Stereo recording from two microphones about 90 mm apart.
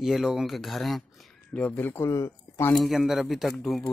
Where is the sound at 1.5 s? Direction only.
15° left (ahead or behind).